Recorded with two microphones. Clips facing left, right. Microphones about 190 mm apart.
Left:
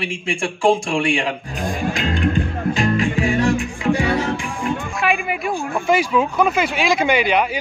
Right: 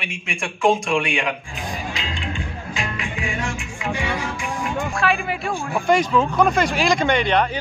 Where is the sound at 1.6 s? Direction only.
50° left (ahead or behind).